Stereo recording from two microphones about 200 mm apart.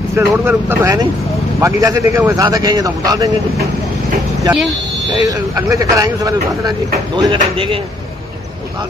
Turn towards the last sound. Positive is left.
turn(degrees=-25)  # may be behind; listen again after turning